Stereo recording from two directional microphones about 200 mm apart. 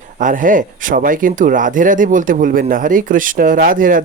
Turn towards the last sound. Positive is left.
turn(degrees=-45)  # may be behind; listen again after turning